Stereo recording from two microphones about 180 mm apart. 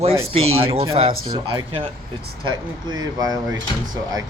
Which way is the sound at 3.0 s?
20° right (ahead or behind).